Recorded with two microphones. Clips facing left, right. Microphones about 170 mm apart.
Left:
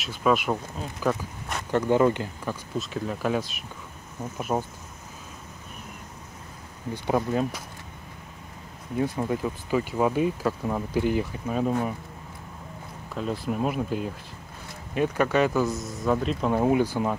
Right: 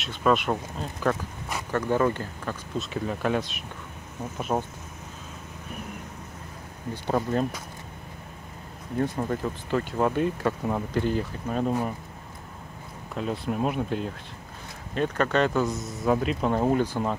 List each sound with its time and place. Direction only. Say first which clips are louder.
0.0 s speech: even; 5° left (ahead or behind)
1.7 s speech: left 3 dB; 20° left (ahead or behind)
2.8 s speech: right 1 dB; centre (ahead or behind)
7.2 s speech: even; 5° left (ahead or behind)
8.9 s speech: left 1 dB; 10° left (ahead or behind)
13.1 s speech: even; centre (ahead or behind)
16.5 s speech: left 3 dB; 10° left (ahead or behind)